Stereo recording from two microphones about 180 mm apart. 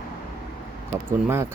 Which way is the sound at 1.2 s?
15° right (ahead or behind).